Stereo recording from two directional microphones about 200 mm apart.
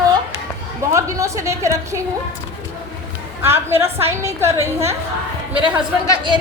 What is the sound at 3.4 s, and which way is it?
A woman's voice, 10° right (ahead or behind).